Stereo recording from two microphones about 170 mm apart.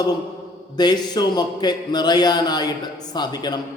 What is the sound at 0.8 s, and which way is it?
A man's voice, 25° left (ahead or behind).